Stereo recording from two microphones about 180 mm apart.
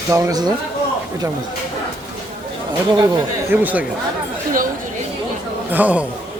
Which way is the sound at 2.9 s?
25° right (ahead or behind).